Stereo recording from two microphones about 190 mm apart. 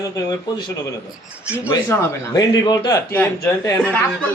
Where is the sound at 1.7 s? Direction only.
15° left (ahead or behind).